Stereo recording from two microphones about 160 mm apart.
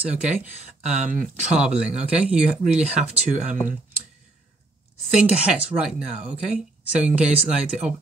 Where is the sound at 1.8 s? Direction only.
5° right (ahead or behind).